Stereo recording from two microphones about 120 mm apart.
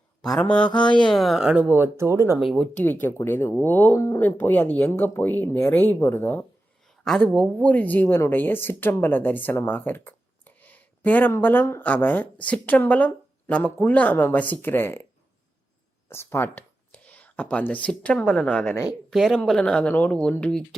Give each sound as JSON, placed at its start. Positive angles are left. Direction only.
{"t": 0.3, "sound": "speech", "side_deg": 10}
{"t": 2.4, "sound": "speech", "side_deg": 0}
{"t": 2.7, "sound": "speech", "side_deg": 15}
{"t": 7.0, "sound": "speech", "side_deg": 0}
{"t": 16.0, "sound": "speech", "side_deg": 20}